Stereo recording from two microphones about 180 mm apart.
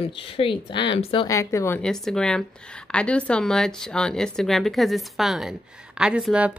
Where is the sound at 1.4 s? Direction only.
15° left (ahead or behind).